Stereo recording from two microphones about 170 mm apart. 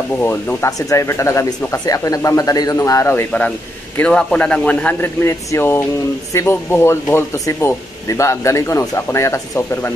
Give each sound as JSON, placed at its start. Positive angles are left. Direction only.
{"t": 0.2, "sound": "speech", "side_deg": 15}